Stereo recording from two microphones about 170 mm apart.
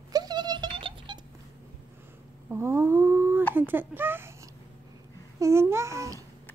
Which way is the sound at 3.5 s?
10° right (ahead or behind).